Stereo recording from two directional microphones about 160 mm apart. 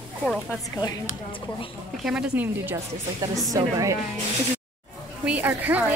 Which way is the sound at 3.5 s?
20° right (ahead or behind).